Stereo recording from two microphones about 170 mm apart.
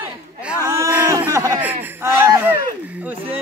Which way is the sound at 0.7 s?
15° right (ahead or behind).